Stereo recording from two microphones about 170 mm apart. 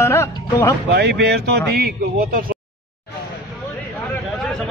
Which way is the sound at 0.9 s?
75° right (ahead or behind).